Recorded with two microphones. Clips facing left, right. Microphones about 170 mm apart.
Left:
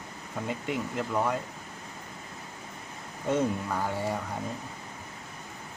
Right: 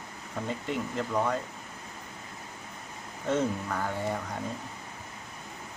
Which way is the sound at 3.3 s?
10° left (ahead or behind).